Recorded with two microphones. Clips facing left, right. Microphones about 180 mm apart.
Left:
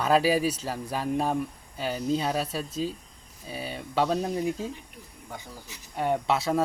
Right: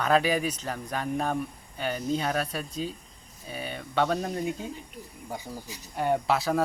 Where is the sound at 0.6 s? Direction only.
5° left (ahead or behind).